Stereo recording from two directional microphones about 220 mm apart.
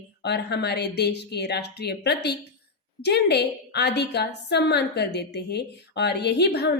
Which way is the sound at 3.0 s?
50° left (ahead or behind).